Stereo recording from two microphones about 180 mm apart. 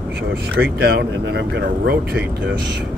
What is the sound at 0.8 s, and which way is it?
Speech, 65° right (ahead or behind).